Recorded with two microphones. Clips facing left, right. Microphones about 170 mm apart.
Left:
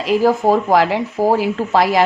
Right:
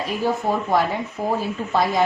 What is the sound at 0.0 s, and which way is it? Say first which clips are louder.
Speech: left 8 dB; 90° left.